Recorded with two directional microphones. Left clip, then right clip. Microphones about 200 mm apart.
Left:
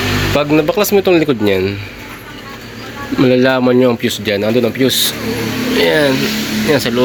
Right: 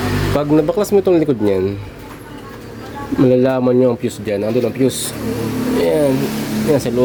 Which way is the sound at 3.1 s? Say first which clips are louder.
Left 2 dB; 5° right (ahead or behind).